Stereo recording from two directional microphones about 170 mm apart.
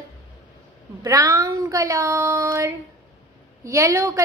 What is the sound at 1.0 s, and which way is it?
A woman's voice, 20° right (ahead or behind).